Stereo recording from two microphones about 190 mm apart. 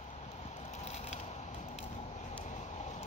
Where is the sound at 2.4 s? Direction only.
40° left (ahead or behind).